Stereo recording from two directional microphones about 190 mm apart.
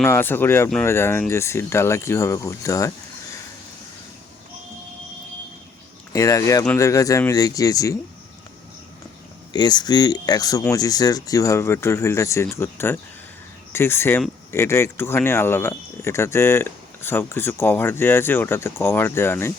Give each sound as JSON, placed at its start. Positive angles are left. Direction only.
{"t": 0.0, "sound": "speech", "side_deg": 10}
{"t": 6.1, "sound": "speech", "side_deg": 15}
{"t": 9.5, "sound": "speech", "side_deg": 20}